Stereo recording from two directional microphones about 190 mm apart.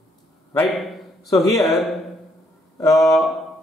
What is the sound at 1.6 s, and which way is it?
Speech, centre (ahead or behind).